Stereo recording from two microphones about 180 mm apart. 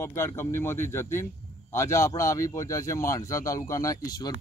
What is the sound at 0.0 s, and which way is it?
A man's voice, 15° left (ahead or behind).